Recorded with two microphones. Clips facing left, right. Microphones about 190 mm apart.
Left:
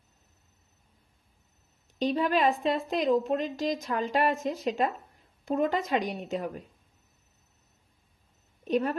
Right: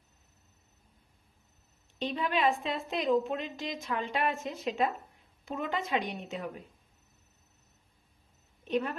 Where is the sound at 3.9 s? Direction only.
40° left (ahead or behind).